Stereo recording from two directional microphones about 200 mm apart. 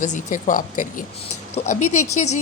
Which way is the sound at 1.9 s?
90° left.